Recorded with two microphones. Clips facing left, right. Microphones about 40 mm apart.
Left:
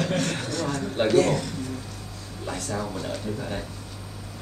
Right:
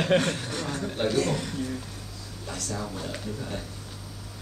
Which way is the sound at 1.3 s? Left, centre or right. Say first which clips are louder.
Left 4 dB; centre.